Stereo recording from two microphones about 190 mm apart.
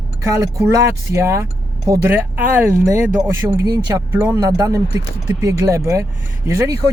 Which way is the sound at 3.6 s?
20° right (ahead or behind).